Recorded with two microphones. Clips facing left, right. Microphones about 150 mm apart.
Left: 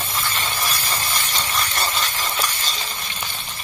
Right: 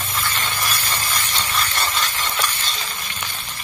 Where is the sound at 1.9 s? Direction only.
Centre (ahead or behind).